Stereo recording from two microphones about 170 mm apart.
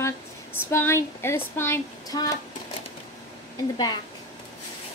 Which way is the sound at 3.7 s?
25° left (ahead or behind).